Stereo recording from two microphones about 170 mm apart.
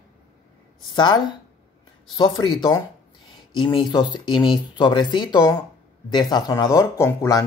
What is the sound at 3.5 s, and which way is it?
Speech, 25° left (ahead or behind).